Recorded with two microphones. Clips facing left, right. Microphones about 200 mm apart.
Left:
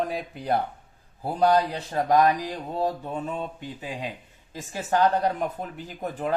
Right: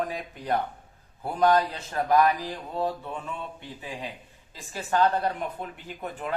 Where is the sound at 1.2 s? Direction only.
30° left (ahead or behind).